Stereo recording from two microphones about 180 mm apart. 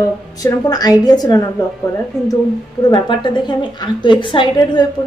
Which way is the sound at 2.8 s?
25° left (ahead or behind).